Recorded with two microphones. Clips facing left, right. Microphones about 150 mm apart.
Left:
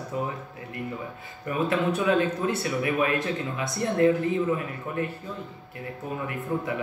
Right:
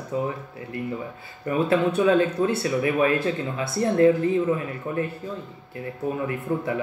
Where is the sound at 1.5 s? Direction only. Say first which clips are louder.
Right 4 dB; 30° right (ahead or behind).